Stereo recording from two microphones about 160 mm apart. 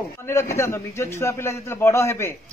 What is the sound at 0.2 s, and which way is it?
A man's voice, 15° left (ahead or behind).